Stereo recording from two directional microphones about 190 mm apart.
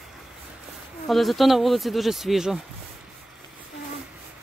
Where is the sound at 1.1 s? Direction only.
Centre (ahead or behind).